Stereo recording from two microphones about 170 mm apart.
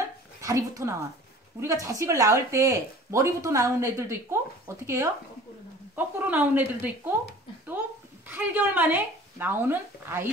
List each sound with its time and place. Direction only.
0.4 s speech: 20° right (ahead or behind)
8.3 s speech: 10° right (ahead or behind)